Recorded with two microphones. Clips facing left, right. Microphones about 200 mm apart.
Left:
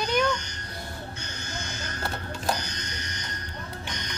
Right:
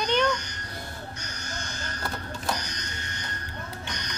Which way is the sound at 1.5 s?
20° left (ahead or behind).